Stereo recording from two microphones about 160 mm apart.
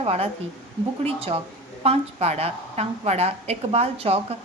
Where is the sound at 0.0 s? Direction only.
40° right (ahead or behind).